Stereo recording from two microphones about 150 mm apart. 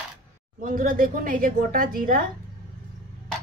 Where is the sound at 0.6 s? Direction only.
65° right (ahead or behind).